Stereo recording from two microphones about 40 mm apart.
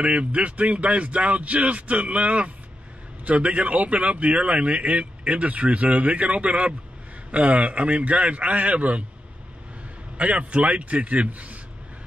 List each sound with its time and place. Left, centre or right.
0.0 s speech: right
10.1 s speech: right